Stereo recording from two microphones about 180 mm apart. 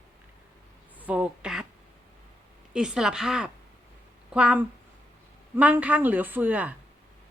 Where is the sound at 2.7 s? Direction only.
5° right (ahead or behind).